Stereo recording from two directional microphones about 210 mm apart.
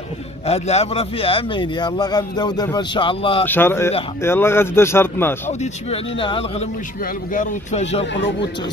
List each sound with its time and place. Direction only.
0.5 s a man's voice: 30° left (ahead or behind)
3.4 s speech: 10° left (ahead or behind)
5.5 s a man's voice: 30° left (ahead or behind)
8.1 s speech: 55° left (ahead or behind)